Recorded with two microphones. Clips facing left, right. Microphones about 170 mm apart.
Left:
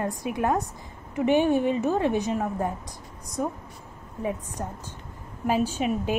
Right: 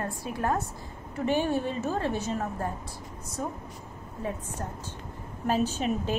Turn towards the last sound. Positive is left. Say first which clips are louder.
# left 3 dB
turn(degrees=10)  # may be behind; listen again after turning